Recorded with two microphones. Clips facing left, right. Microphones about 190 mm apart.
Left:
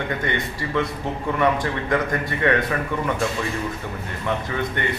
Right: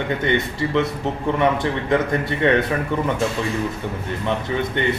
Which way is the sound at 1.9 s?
25° right (ahead or behind).